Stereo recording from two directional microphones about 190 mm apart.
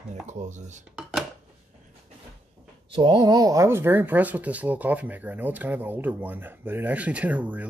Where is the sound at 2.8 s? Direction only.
25° right (ahead or behind).